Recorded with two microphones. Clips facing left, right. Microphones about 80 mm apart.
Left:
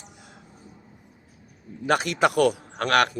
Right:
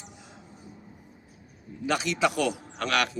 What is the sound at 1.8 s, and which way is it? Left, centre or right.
A man's voice, left.